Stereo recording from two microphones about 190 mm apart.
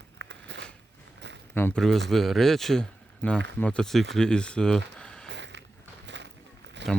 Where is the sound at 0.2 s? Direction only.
65° right (ahead or behind).